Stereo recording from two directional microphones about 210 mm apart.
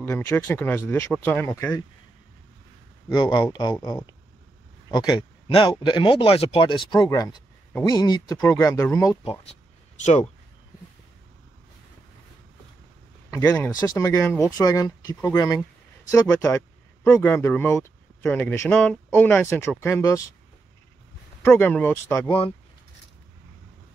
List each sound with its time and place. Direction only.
0.0 s speech: 10° left (ahead or behind)
3.1 s speech: 20° left (ahead or behind)
9.2 s speech: 30° left (ahead or behind)
13.3 s speech: 10° left (ahead or behind)
21.4 s speech: 10° left (ahead or behind)